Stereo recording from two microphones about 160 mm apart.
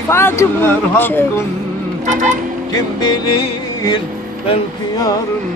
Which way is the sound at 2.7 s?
25° left (ahead or behind).